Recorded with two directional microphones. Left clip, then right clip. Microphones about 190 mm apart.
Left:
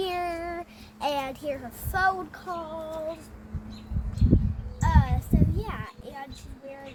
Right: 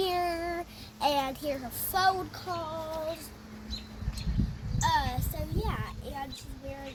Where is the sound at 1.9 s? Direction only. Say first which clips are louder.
Left 1 dB; 20° left (ahead or behind).